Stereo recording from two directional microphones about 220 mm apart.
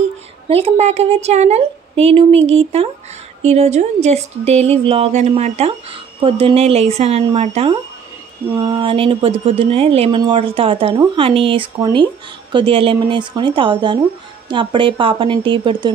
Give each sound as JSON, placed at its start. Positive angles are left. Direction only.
{"t": 0.5, "sound": "a woman's voice", "side_deg": -25}
{"t": 8.5, "sound": "a woman's voice", "side_deg": -20}